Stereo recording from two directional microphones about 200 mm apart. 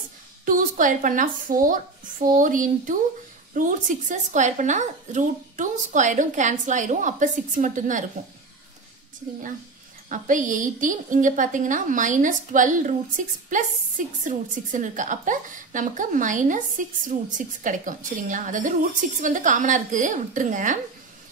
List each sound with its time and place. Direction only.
0.5 s a woman's voice: 40° right (ahead or behind)
10.0 s a woman's voice: 40° right (ahead or behind)